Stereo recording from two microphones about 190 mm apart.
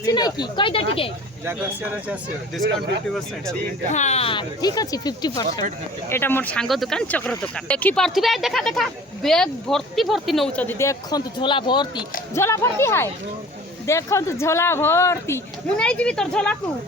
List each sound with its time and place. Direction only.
0.0 s speech: 20° left (ahead or behind)
3.8 s speech: 40° left (ahead or behind); by 16.6 s 5° left (ahead or behind)